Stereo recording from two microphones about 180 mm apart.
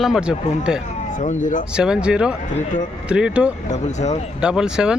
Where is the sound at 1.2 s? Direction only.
45° left (ahead or behind).